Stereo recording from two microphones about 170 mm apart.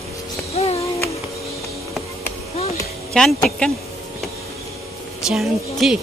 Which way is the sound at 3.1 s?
5° left (ahead or behind).